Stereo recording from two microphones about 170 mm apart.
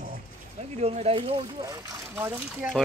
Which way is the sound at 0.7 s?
40° right (ahead or behind).